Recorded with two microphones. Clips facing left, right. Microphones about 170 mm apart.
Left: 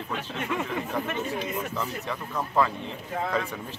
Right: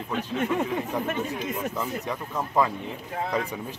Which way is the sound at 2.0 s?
15° right (ahead or behind).